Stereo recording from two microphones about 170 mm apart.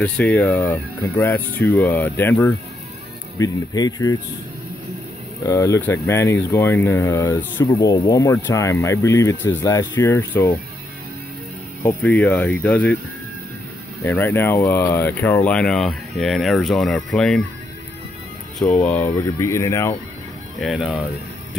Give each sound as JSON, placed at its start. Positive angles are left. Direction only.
{"t": 0.0, "sound": "speech", "side_deg": 10}
{"t": 3.3, "sound": "speech", "side_deg": 20}
{"t": 5.4, "sound": "speech", "side_deg": 20}
{"t": 12.0, "sound": "speech", "side_deg": 5}
{"t": 14.0, "sound": "speech", "side_deg": 10}
{"t": 18.6, "sound": "speech", "side_deg": 10}
{"t": 20.6, "sound": "speech", "side_deg": 0}